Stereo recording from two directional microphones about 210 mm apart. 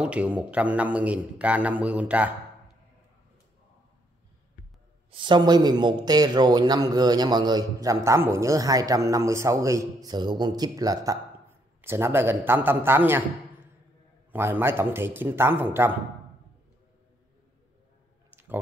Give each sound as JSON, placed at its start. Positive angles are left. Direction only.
{"t": 0.0, "sound": "a man's voice", "side_deg": -5}
{"t": 5.1, "sound": "a man's voice", "side_deg": -20}
{"t": 14.3, "sound": "a man's voice", "side_deg": -10}
{"t": 18.3, "sound": "clicking", "side_deg": -10}